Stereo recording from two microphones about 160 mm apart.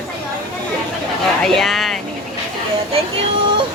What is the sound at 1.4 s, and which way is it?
Speech, centre (ahead or behind).